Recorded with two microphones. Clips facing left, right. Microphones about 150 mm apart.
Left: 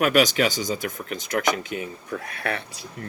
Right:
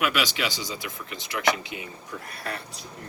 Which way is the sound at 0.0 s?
45° left (ahead or behind).